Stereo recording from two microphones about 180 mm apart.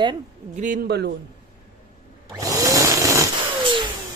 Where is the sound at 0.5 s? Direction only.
45° right (ahead or behind).